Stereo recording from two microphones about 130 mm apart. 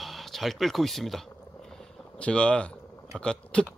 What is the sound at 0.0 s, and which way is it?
Speech, centre (ahead or behind).